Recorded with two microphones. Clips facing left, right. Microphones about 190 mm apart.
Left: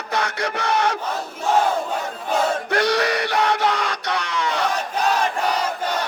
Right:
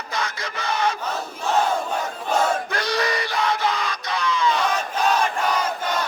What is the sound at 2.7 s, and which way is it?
Music, 70° left (ahead or behind).